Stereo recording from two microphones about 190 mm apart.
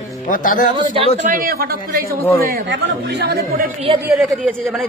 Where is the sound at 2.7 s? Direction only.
65° right (ahead or behind).